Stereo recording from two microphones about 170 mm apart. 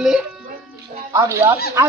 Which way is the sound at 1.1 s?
15° right (ahead or behind).